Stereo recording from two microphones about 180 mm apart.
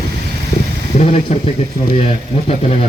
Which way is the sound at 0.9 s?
35° left (ahead or behind).